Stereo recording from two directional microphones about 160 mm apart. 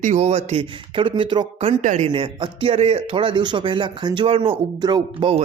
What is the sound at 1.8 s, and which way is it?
Speech, 45° right (ahead or behind).